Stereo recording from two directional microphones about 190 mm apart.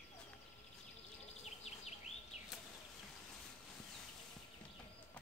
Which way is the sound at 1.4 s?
35° left (ahead or behind).